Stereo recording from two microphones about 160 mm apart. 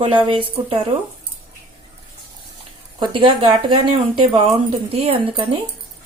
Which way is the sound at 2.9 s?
30° right (ahead or behind).